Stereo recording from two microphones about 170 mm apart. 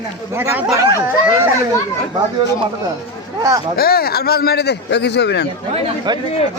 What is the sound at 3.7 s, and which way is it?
A man's voice, 65° left (ahead or behind).